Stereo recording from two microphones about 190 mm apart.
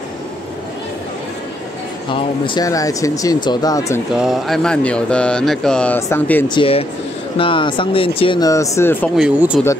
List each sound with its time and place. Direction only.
2.0 s speech: 25° left (ahead or behind)
4.2 s speech: centre (ahead or behind)
6.5 s speech: 30° left (ahead or behind); by 9.1 s 15° left (ahead or behind)
9.1 s speech: 5° right (ahead or behind)